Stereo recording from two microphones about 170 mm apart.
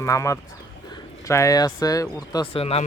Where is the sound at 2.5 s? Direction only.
35° left (ahead or behind).